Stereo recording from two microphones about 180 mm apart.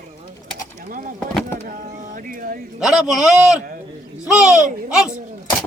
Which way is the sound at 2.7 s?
5° right (ahead or behind).